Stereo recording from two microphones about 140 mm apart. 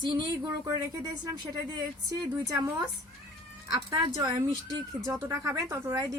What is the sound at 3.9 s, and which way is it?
A woman's voice, 30° right (ahead or behind).